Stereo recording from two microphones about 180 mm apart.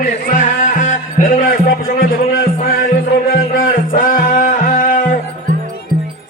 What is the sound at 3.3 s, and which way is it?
Music, 50° left (ahead or behind).